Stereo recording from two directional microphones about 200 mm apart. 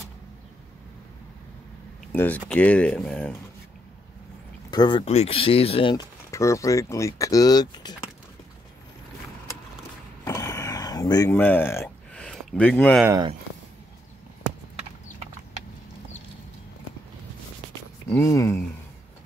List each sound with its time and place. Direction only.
2.1 s speech: 10° left (ahead or behind)
4.6 s speech: 25° left (ahead or behind)
10.2 s a sound: 15° left (ahead or behind)
13.0 s speech: 15° right (ahead or behind)
18.1 s speech: 15° left (ahead or behind)